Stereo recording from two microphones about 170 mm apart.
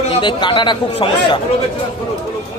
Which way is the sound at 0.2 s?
30° left (ahead or behind).